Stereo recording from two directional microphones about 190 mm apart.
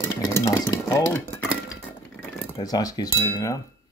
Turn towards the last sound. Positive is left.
turn(degrees=15)  # may be behind; listen again after turning